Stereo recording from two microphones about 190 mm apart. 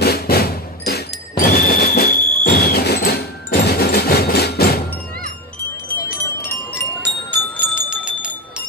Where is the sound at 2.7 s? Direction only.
55° left (ahead or behind).